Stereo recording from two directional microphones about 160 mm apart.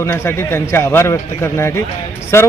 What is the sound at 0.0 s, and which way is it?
A man's voice, 15° left (ahead or behind).